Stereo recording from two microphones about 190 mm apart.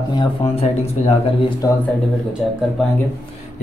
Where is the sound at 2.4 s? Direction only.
5° right (ahead or behind).